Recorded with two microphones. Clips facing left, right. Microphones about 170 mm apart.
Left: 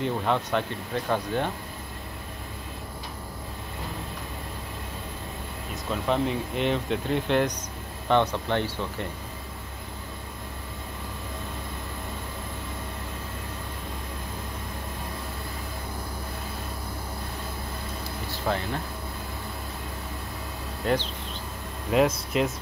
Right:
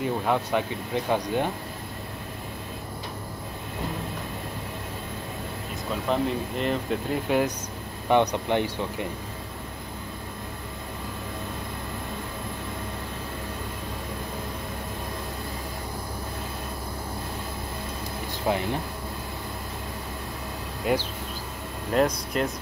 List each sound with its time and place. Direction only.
0.0 s speech: 10° right (ahead or behind)
6.0 s speech: centre (ahead or behind)
18.4 s speech: 15° right (ahead or behind)
20.8 s speech: 10° right (ahead or behind)
21.9 s speech: 5° left (ahead or behind)